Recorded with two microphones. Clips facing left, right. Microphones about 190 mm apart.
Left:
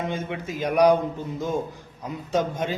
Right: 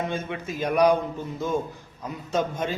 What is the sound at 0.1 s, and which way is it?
Speech, 15° left (ahead or behind).